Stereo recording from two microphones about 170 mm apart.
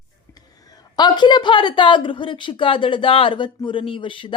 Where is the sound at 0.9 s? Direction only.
25° left (ahead or behind).